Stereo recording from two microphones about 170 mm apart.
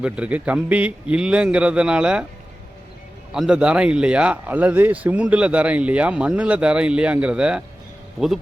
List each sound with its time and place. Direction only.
0.0 s a man's voice: 5° right (ahead or behind)
3.3 s a man's voice: 5° right (ahead or behind)